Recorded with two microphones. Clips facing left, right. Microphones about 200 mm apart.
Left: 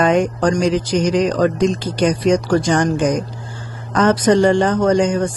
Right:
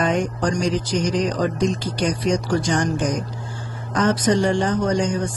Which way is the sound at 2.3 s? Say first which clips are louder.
Left 5 dB; 60° left (ahead or behind).